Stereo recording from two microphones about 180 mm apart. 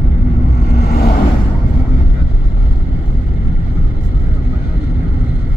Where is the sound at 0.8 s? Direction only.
55° left (ahead or behind).